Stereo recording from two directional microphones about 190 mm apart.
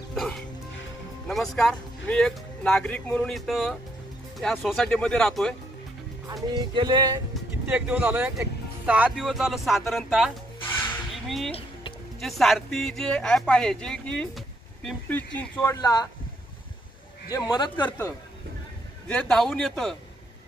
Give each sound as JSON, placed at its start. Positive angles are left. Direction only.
{"t": 0.1, "sound": "music", "side_deg": 0}
{"t": 1.2, "sound": "speech", "side_deg": 5}
{"t": 6.2, "sound": "speech", "side_deg": -20}
{"t": 7.7, "sound": "speech", "side_deg": -5}
{"t": 17.3, "sound": "speech", "side_deg": 20}
{"t": 17.8, "sound": "speech", "side_deg": 10}